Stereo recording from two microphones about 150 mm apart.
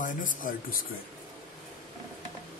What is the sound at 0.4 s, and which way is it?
Speech, 65° left (ahead or behind).